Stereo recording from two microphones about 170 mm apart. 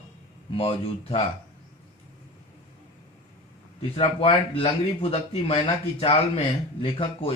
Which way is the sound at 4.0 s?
35° left (ahead or behind).